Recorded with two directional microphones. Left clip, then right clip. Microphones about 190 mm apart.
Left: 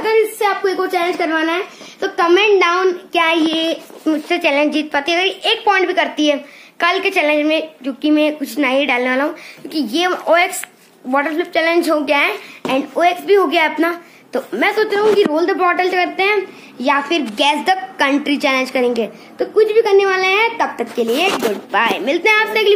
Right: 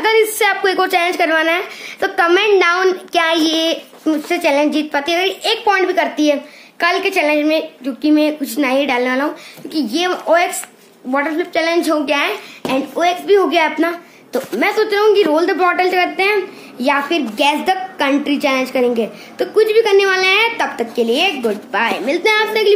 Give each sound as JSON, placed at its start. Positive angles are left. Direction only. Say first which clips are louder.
{"t": 0.0, "sound": "a sound", "louder": "right 2 dB", "side_deg": -30}
{"t": 0.8, "sound": "a woman's voice", "louder": "right 3 dB", "side_deg": -30}
{"t": 2.0, "sound": "a woman's voice", "louder": "even", "side_deg": -20}